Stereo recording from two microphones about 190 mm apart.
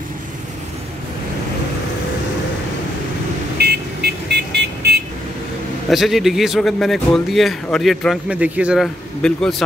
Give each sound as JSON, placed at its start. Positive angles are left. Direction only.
{"t": 3.5, "sound": "vehicle", "side_deg": -60}
{"t": 5.9, "sound": "a man's voice", "side_deg": 0}